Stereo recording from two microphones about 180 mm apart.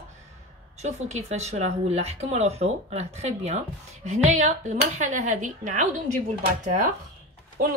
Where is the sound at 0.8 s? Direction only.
40° right (ahead or behind).